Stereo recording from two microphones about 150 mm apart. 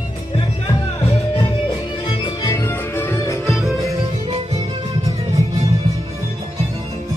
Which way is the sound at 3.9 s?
45° right (ahead or behind).